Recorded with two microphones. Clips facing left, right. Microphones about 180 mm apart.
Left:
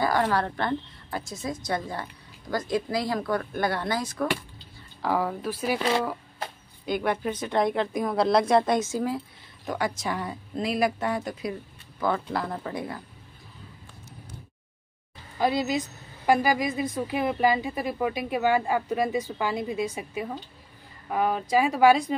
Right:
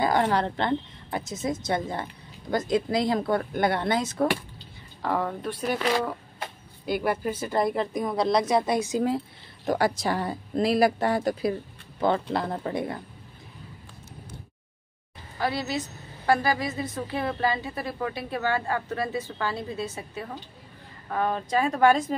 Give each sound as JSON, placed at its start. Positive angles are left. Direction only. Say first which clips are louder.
{"t": 0.0, "sound": "a woman's voice", "louder": "right 1 dB", "side_deg": -20}
{"t": 5.0, "sound": "a woman's voice", "louder": "left 1 dB", "side_deg": 0}
{"t": 5.8, "sound": "speech", "louder": "right 1 dB", "side_deg": 25}
{"t": 6.9, "sound": "a woman's voice", "louder": "even", "side_deg": -5}
{"t": 9.7, "sound": "a woman's voice", "louder": "right 4 dB", "side_deg": -35}
{"t": 15.3, "sound": "a woman's voice", "louder": "left 3 dB", "side_deg": 15}